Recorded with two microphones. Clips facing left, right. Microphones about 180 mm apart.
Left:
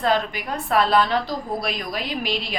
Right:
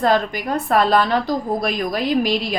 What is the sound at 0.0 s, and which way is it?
Speech, 45° right (ahead or behind).